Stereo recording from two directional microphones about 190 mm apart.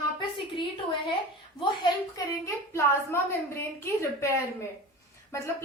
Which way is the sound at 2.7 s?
15° left (ahead or behind).